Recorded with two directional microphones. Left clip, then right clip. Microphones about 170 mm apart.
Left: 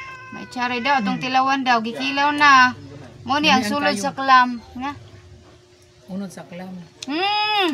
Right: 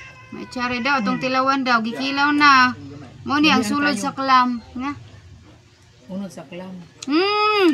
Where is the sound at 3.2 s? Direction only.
15° left (ahead or behind).